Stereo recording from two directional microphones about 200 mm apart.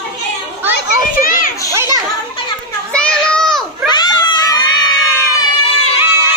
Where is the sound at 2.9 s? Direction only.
5° left (ahead or behind).